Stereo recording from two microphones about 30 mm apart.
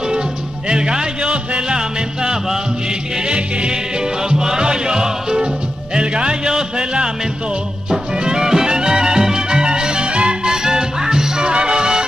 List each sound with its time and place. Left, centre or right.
0.7 s music: right
1.7 s music: right
3.3 s music: right
4.2 s music: right
5.9 s speech: right
6.5 s music: right
10.5 s music: right
11.4 s music: right